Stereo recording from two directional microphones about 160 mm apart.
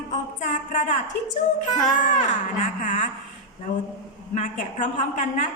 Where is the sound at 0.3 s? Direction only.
50° left (ahead or behind).